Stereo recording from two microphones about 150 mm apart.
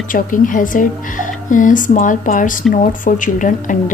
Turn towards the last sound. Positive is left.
turn(degrees=60)  # may be behind; listen again after turning